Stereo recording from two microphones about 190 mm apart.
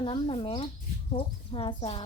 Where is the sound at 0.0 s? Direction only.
25° left (ahead or behind).